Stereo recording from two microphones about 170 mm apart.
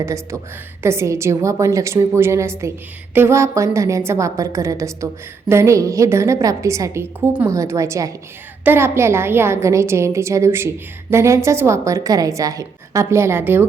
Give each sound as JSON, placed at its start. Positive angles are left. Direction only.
{"t": 0.0, "sound": "a woman's voice", "side_deg": -15}